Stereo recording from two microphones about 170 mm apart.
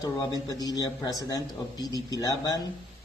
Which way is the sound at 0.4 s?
20° left (ahead or behind).